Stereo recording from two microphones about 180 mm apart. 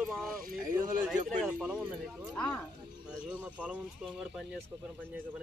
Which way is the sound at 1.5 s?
Centre (ahead or behind).